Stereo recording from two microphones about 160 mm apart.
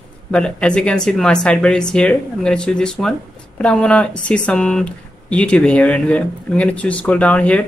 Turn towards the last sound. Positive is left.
turn(degrees=10)  # may be behind; listen again after turning